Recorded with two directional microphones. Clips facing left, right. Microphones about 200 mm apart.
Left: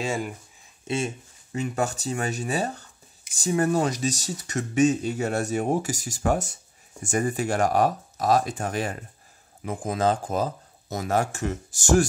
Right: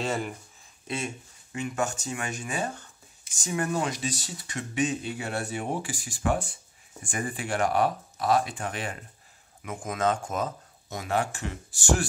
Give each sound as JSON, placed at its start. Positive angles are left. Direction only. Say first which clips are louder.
{"t": 0.0, "sound": "speech", "louder": "left 1 dB", "side_deg": 10}
{"t": 0.8, "sound": "speech", "louder": "left 5 dB", "side_deg": 30}